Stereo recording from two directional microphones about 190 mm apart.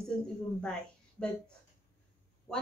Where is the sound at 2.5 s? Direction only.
15° left (ahead or behind).